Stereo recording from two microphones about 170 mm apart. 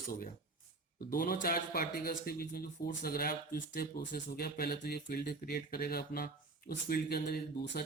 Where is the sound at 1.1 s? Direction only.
60° left (ahead or behind).